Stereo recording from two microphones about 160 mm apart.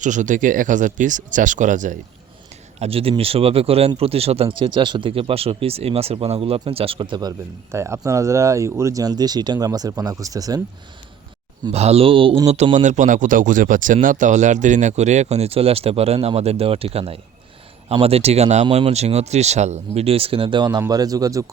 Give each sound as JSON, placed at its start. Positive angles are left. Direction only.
{"t": 0.0, "sound": "a man's voice", "side_deg": -50}
{"t": 2.7, "sound": "speech", "side_deg": -40}
{"t": 11.7, "sound": "a man's voice", "side_deg": -40}